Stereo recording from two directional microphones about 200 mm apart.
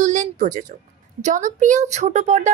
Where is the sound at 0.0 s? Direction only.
40° right (ahead or behind).